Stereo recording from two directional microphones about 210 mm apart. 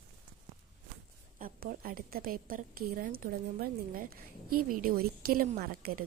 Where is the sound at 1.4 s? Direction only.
45° right (ahead or behind).